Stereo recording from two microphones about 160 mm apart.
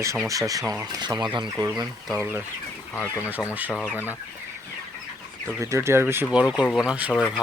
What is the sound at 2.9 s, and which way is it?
Speech, 15° left (ahead or behind).